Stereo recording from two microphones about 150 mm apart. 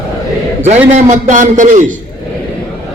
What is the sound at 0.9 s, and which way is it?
Speech, 50° right (ahead or behind).